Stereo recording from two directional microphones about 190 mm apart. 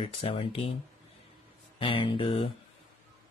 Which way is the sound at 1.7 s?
30° left (ahead or behind).